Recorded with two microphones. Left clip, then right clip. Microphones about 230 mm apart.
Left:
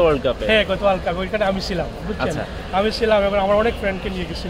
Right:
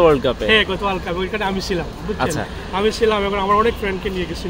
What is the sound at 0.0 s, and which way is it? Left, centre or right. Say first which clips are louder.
Speech: right 3 dB; right.